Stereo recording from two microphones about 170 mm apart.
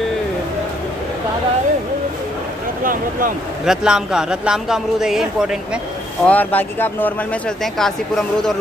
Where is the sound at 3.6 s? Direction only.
5° right (ahead or behind).